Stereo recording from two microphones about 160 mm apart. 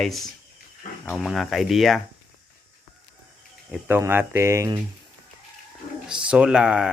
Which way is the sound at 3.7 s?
10° right (ahead or behind).